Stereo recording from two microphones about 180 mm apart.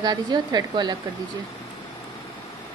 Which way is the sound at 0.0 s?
20° right (ahead or behind).